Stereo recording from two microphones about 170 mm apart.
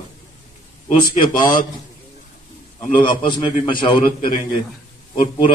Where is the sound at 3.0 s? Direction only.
30° left (ahead or behind).